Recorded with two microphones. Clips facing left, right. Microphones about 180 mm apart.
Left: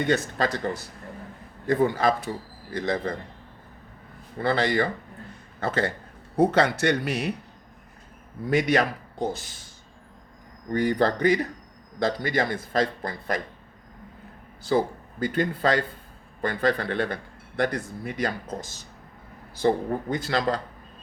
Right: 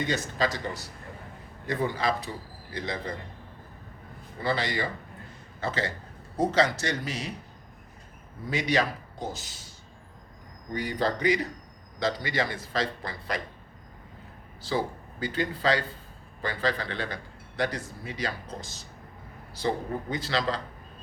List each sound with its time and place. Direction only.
0.0 s speech: 55° left (ahead or behind)
4.4 s a man's voice: 55° left (ahead or behind)
8.4 s speech: 55° left (ahead or behind)
10.7 s speech: 55° left (ahead or behind)
14.6 s speech: 50° left (ahead or behind)
19.6 s speech: 50° left (ahead or behind)